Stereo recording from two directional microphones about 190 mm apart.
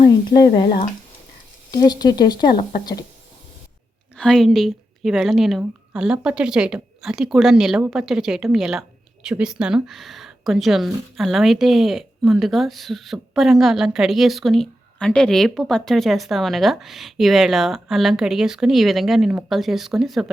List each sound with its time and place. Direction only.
0.1 s speech: 25° left (ahead or behind)
4.2 s a woman's voice: centre (ahead or behind)